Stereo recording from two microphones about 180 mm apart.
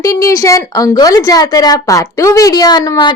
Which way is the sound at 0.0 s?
20° left (ahead or behind).